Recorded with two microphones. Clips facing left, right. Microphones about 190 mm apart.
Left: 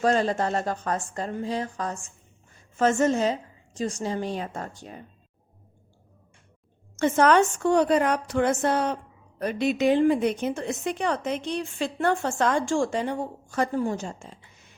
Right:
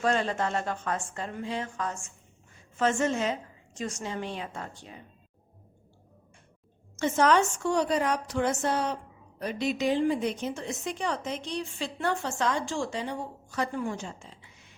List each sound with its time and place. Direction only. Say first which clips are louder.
0.0 s a woman's voice: left 4 dB; 40° left (ahead or behind)
6.9 s a woman's voice: left 4 dB; 55° left (ahead or behind)
13.7 s speech: left 6 dB; 40° left (ahead or behind)